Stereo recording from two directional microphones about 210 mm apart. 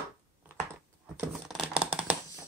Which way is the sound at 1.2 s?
Centre (ahead or behind).